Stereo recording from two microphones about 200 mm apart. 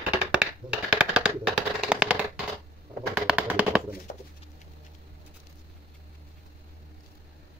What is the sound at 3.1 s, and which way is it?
Bird, 5° right (ahead or behind).